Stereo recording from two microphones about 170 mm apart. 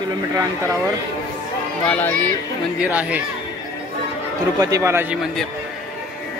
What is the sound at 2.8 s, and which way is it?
Speech, 10° right (ahead or behind).